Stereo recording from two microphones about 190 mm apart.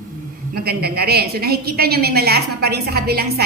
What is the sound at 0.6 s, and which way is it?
A woman's voice, 55° right (ahead or behind).